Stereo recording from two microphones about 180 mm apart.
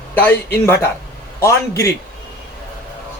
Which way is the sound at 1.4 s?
15° left (ahead or behind).